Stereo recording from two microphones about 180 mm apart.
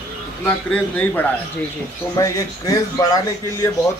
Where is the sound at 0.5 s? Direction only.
5° left (ahead or behind).